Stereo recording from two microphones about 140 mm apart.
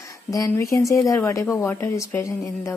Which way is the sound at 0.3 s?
25° left (ahead or behind).